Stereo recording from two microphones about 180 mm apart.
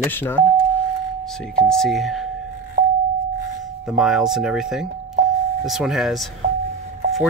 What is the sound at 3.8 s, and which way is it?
Speech, centre (ahead or behind).